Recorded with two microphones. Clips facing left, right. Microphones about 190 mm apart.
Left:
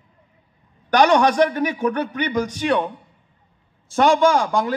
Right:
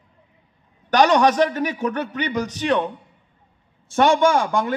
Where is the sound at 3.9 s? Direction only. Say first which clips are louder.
Left 1 dB; 35° left (ahead or behind).